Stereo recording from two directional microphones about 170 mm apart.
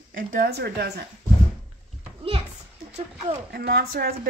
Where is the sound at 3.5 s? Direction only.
65° right (ahead or behind).